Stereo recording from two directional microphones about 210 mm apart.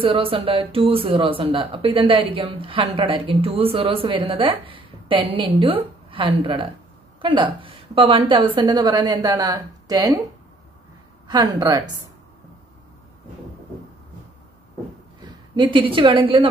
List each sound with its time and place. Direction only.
0.0 s speech: 25° right (ahead or behind)
11.2 s speech: 20° right (ahead or behind)
15.2 s a woman's voice: 20° right (ahead or behind)